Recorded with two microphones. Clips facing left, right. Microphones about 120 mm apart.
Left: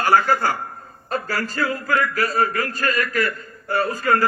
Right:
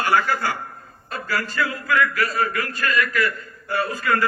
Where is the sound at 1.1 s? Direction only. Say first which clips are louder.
Left 1 dB; 35° left (ahead or behind).